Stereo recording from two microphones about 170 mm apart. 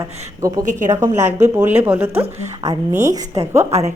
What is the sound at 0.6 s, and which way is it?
Speech, 50° right (ahead or behind).